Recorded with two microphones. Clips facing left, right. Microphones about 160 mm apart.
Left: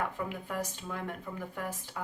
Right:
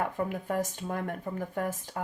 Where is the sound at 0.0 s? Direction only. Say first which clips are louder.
Right 4 dB; 45° right (ahead or behind).